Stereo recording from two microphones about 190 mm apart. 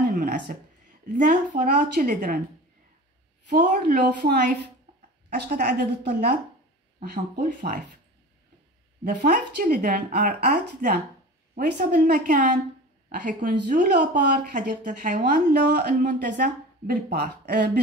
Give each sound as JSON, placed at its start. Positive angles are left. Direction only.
{"t": 0.5, "sound": "speech", "side_deg": -45}
{"t": 3.4, "sound": "speech", "side_deg": -45}
{"t": 9.0, "sound": "speech", "side_deg": -45}
{"t": 15.5, "sound": "speech", "side_deg": -60}
{"t": 16.1, "sound": "speech", "side_deg": -45}